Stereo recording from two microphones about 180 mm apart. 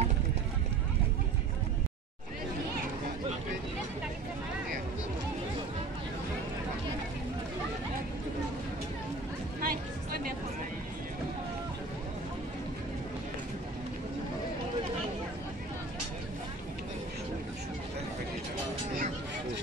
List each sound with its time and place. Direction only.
9.6 s chatter: 55° right (ahead or behind)